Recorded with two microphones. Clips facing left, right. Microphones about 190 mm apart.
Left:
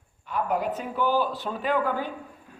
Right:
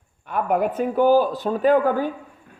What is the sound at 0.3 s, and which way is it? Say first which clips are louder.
A woman's voice: right 5 dB; 55° right (ahead or behind).